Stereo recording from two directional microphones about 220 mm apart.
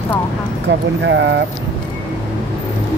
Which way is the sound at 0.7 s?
55° right (ahead or behind).